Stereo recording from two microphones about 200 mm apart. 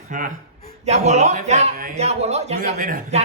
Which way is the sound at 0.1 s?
40° right (ahead or behind).